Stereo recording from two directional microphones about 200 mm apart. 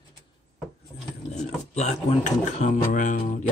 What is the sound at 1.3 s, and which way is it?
Speech, 35° left (ahead or behind).